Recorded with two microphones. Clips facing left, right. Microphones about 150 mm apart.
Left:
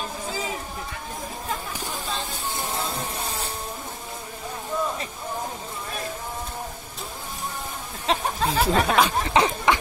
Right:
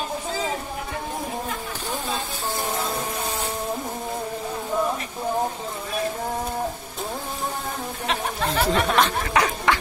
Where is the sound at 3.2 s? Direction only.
35° right (ahead or behind).